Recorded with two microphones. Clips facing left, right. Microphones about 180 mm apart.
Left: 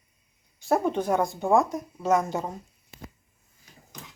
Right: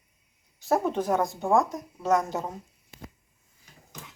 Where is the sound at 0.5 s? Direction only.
Centre (ahead or behind).